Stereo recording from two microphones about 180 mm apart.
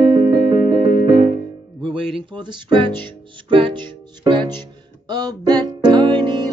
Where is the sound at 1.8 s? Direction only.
30° right (ahead or behind).